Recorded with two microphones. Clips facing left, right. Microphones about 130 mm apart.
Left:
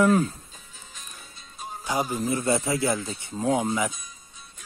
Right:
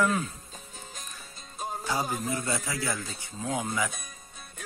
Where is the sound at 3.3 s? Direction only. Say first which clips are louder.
Left 7 dB; 35° left (ahead or behind).